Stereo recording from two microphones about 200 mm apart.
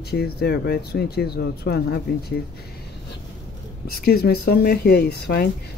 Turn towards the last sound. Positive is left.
turn(degrees=55)  # may be behind; listen again after turning